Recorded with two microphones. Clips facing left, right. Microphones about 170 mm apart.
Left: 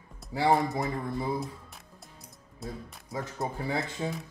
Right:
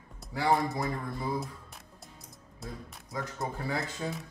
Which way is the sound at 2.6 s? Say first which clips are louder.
Left 3 dB; centre (ahead or behind).